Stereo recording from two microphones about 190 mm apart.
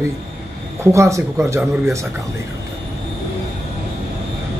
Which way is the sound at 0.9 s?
15° right (ahead or behind).